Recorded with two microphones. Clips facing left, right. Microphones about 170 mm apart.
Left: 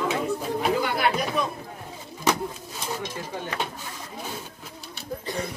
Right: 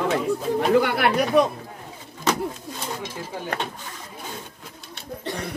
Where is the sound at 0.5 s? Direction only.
60° right (ahead or behind).